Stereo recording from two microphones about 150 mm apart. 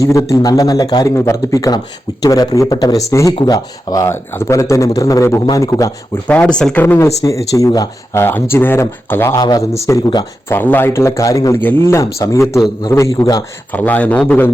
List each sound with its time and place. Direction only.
0.0 s speech: 20° left (ahead or behind)
6.2 s a man's voice: 10° left (ahead or behind)
6.8 s speech: 15° left (ahead or behind)
10.5 s a man's voice: 15° left (ahead or behind)
13.7 s a man's voice: 10° left (ahead or behind)